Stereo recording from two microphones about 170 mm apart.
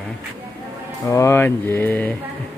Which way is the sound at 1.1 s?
15° left (ahead or behind).